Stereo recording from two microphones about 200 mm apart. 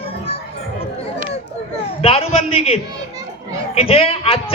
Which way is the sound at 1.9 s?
30° left (ahead or behind).